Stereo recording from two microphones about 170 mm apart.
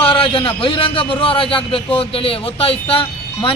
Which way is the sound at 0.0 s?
30° left (ahead or behind).